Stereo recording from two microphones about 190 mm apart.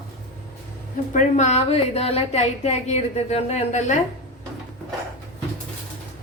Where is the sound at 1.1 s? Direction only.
40° left (ahead or behind).